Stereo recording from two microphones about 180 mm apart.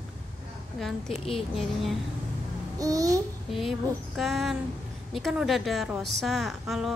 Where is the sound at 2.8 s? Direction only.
20° right (ahead or behind).